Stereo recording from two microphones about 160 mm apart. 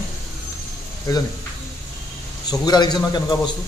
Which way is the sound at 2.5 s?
25° left (ahead or behind).